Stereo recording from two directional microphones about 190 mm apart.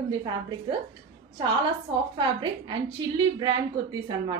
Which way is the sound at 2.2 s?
25° right (ahead or behind).